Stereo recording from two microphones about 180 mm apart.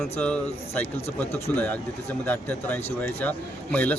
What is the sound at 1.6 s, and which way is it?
Speech, 10° left (ahead or behind).